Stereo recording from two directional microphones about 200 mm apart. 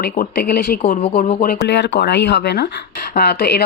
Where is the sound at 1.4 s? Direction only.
55° left (ahead or behind).